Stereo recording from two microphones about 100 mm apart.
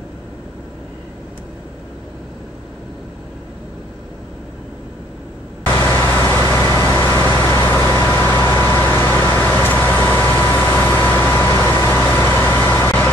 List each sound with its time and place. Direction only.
5.9 s vehicle: 25° left (ahead or behind)